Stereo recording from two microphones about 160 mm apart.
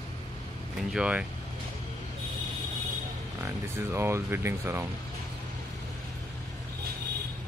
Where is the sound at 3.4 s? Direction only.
15° right (ahead or behind).